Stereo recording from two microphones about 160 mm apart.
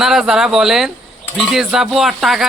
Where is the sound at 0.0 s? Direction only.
5° right (ahead or behind).